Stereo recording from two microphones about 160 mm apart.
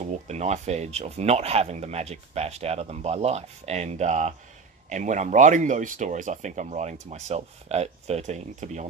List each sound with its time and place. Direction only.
0.0 s speech: 45° right (ahead or behind)